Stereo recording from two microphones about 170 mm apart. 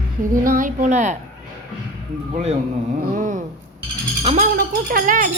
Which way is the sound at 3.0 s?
50° right (ahead or behind).